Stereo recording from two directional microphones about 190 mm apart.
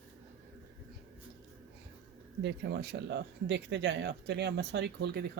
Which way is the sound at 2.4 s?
65° right (ahead or behind).